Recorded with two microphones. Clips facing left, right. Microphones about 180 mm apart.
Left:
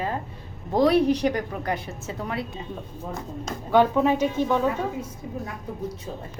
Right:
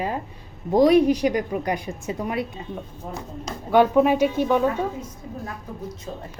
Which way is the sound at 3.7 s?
10° right (ahead or behind).